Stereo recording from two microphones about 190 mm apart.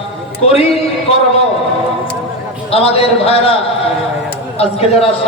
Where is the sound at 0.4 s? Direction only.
30° left (ahead or behind).